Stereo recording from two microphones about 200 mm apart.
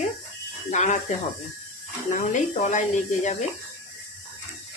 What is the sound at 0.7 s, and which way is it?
Speech, 35° left (ahead or behind).